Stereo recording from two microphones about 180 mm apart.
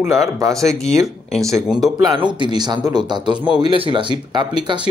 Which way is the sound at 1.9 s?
25° right (ahead or behind).